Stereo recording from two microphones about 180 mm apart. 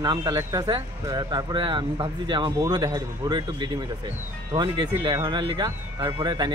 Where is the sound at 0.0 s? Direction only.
25° right (ahead or behind).